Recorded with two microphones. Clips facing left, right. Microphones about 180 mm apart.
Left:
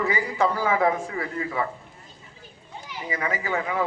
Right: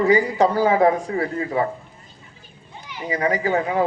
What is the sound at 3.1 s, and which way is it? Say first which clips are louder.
Speech: right 7 dB; 40° right (ahead or behind).